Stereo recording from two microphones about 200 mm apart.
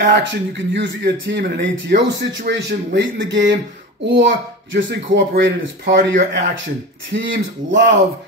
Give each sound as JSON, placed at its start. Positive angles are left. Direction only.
{"t": 0.0, "sound": "speech", "side_deg": -60}